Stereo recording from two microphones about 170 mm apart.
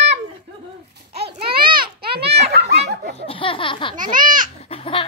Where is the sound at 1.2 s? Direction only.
70° right (ahead or behind).